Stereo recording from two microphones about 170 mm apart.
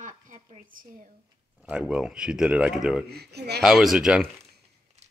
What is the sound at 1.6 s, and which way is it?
Speech, 5° right (ahead or behind).